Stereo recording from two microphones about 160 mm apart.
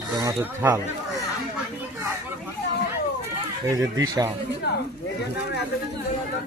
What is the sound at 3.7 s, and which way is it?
Speech, 20° right (ahead or behind).